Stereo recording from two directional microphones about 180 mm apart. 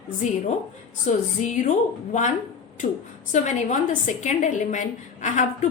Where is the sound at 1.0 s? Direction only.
40° left (ahead or behind).